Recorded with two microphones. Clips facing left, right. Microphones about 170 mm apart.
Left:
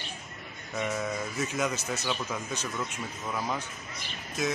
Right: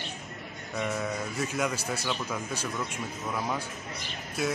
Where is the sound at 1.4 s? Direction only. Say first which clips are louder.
Right 1 dB; 10° right (ahead or behind).